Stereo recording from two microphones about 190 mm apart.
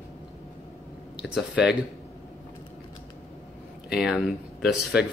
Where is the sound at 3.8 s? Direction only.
5° right (ahead or behind).